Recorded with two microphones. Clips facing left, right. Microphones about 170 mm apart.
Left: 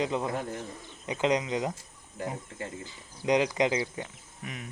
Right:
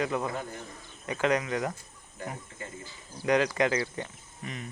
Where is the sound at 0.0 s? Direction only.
20° left (ahead or behind).